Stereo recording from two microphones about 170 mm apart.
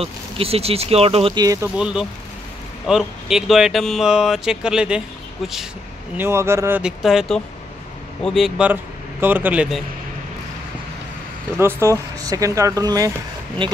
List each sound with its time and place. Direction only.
0.0 s speech: 35° right (ahead or behind)
1.8 s speech: 5° right (ahead or behind)
6.1 s speech: 15° right (ahead or behind)
6.8 s speech: centre (ahead or behind)
11.5 s speech: 15° right (ahead or behind)